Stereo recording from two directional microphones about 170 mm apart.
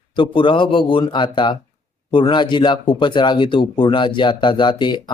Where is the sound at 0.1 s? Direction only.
30° left (ahead or behind).